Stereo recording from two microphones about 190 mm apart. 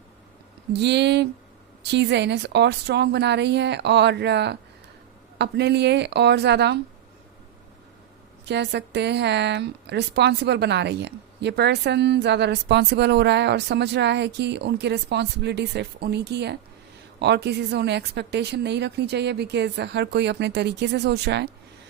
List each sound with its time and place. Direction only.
0.7 s a woman's voice: 65° right (ahead or behind)
8.4 s a woman's voice: 65° right (ahead or behind)